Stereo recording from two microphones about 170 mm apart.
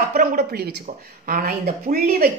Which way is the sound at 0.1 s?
55° right (ahead or behind).